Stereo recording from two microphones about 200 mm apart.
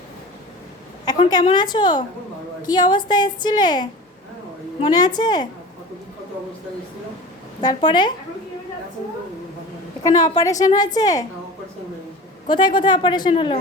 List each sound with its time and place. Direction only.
1.0 s a woman's voice: 20° left (ahead or behind)
7.6 s a woman's voice: 20° left (ahead or behind)
10.0 s a woman's voice: 20° left (ahead or behind)
12.5 s a woman's voice: 25° left (ahead or behind)